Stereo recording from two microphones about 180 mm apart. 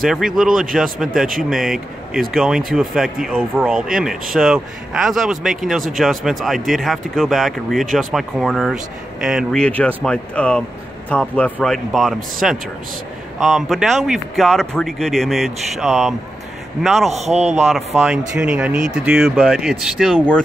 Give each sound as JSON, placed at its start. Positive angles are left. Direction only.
{"t": 0.0, "sound": "a man's voice", "side_deg": 0}
{"t": 17.1, "sound": "a man's voice", "side_deg": -35}
{"t": 17.6, "sound": "speech", "side_deg": 0}